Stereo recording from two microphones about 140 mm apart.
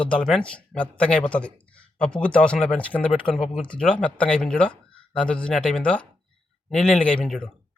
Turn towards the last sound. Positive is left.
turn(degrees=5)  # may be behind; listen again after turning